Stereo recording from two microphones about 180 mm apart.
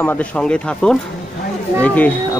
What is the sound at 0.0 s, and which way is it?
Speech, 10° left (ahead or behind).